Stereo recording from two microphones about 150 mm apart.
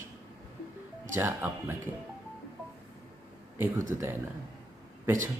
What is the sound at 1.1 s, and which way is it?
Speech, 15° right (ahead or behind).